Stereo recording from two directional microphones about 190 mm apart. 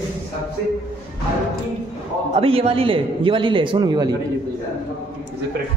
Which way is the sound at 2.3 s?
30° right (ahead or behind).